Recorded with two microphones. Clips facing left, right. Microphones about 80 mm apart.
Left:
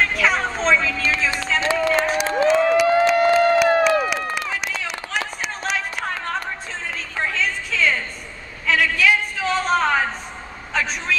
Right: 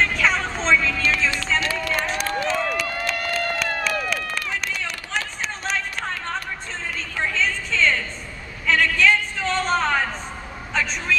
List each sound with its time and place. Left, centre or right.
0.0 s vehicle: centre
0.8 s music: centre
1.6 s run: left
2.2 s crowd: centre
3.6 s run: left
5.6 s a sound: centre